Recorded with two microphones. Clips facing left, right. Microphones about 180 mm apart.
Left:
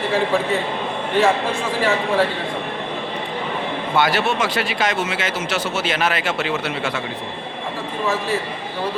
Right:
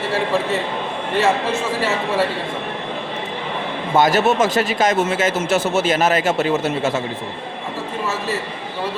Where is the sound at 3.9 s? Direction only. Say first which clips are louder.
Right 4 dB; 40° right (ahead or behind).